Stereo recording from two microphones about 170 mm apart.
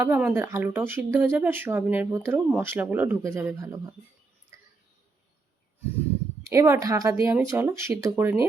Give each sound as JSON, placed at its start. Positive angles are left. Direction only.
{"t": 0.0, "sound": "speech", "side_deg": -10}
{"t": 6.5, "sound": "speech", "side_deg": -20}